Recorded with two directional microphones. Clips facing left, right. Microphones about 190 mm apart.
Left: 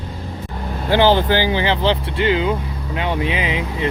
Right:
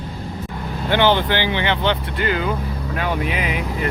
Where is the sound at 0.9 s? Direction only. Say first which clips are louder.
Left 3 dB; 35° left (ahead or behind).